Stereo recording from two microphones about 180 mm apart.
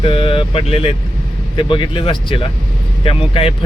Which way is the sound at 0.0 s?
30° left (ahead or behind).